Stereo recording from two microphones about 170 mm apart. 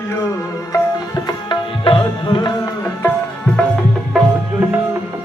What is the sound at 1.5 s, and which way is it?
Tabla, 30° left (ahead or behind).